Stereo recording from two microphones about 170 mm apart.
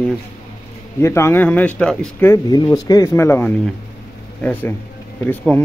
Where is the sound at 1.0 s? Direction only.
15° left (ahead or behind).